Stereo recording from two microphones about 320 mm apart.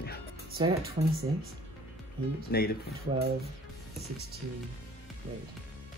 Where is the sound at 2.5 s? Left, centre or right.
Left.